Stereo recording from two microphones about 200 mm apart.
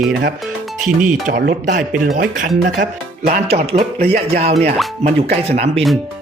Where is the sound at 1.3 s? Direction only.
50° right (ahead or behind).